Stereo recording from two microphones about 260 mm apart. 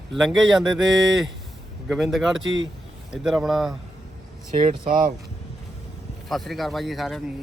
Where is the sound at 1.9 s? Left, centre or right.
Centre.